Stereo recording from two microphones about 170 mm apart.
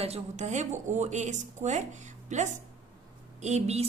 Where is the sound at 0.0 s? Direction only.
40° right (ahead or behind).